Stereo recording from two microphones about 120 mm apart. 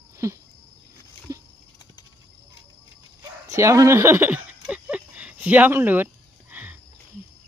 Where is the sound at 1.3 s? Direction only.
25° right (ahead or behind).